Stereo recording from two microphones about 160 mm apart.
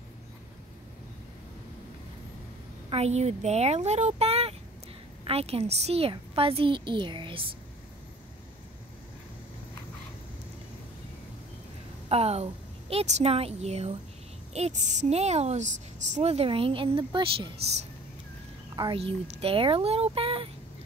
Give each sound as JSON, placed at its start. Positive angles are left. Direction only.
{"t": 2.9, "sound": "a woman's voice", "side_deg": -45}
{"t": 12.1, "sound": "a woman's voice", "side_deg": -40}
{"t": 18.8, "sound": "a woman's voice", "side_deg": -35}